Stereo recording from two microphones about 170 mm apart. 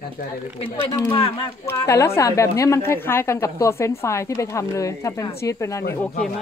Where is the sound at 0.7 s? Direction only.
30° left (ahead or behind).